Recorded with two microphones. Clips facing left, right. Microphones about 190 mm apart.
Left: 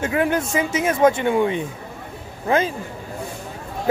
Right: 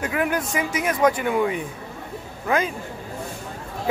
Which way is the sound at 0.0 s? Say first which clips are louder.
Left 3 dB; 25° left (ahead or behind).